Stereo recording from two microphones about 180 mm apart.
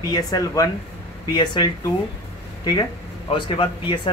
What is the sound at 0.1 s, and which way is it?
Speech, 20° left (ahead or behind).